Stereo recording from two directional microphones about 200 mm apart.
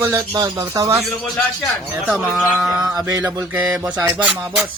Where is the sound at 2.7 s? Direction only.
15° right (ahead or behind).